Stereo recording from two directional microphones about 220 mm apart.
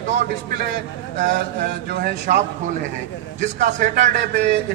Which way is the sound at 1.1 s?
35° right (ahead or behind).